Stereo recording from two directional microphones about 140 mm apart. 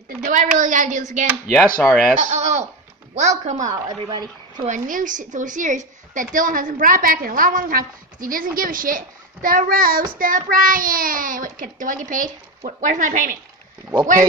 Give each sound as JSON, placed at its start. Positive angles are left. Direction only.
{"t": 0.2, "sound": "a woman's voice", "side_deg": -70}
{"t": 1.8, "sound": "speech", "side_deg": 5}
{"t": 2.1, "sound": "a woman's voice", "side_deg": -55}
{"t": 3.6, "sound": "a woman's voice", "side_deg": -30}
{"t": 4.6, "sound": "a woman's voice", "side_deg": -70}